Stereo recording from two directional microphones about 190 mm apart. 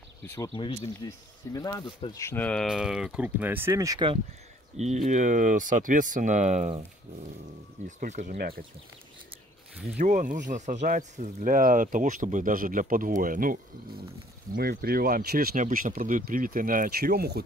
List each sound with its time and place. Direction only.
0.6 s speech: 20° left (ahead or behind); by 4.1 s 20° right (ahead or behind)
4.7 s speech: 35° right (ahead or behind)
8.0 s speech: 45° right (ahead or behind)
9.9 s speech: 40° right (ahead or behind)